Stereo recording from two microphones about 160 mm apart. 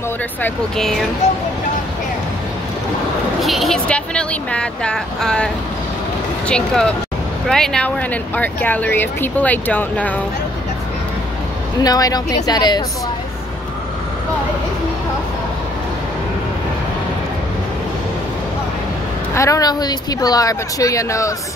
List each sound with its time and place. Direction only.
0.4 s speech: centre (ahead or behind)
3.4 s speech: centre (ahead or behind)
11.8 s speech: 25° left (ahead or behind)
19.3 s speech: 20° left (ahead or behind)